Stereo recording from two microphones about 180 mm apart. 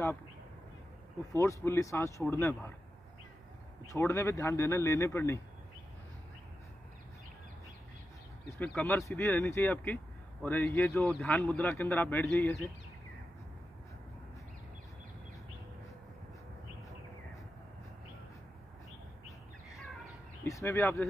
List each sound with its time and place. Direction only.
1.3 s speech: 15° left (ahead or behind)
3.8 s speech: 15° left (ahead or behind)
8.6 s speech: 10° left (ahead or behind)
20.4 s speech: 15° left (ahead or behind)